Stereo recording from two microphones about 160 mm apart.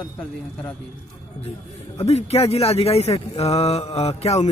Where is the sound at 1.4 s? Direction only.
40° left (ahead or behind).